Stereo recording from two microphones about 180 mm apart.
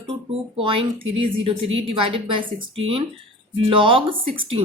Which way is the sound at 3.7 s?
30° right (ahead or behind).